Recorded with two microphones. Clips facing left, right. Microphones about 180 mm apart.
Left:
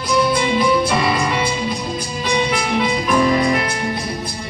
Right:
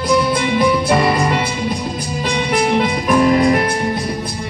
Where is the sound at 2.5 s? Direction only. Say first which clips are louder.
Right 3 dB; 50° right (ahead or behind).